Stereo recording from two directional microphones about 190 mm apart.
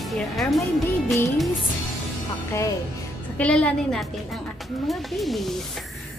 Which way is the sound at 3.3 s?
5° left (ahead or behind).